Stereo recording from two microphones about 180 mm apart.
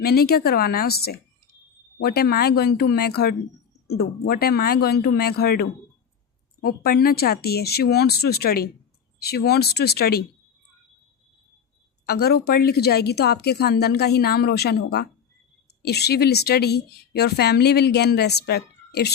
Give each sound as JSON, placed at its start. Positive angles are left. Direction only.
{"t": 0.0, "sound": "speech", "side_deg": 60}
{"t": 12.0, "sound": "speech", "side_deg": 60}